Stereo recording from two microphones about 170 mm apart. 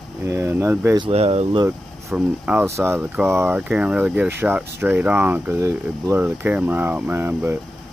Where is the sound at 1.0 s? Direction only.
35° right (ahead or behind).